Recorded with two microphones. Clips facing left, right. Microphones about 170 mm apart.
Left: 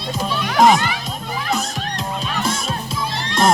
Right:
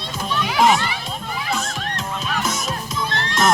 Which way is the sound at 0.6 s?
40° left (ahead or behind).